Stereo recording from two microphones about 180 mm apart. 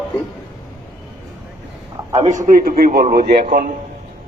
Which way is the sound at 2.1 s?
40° right (ahead or behind).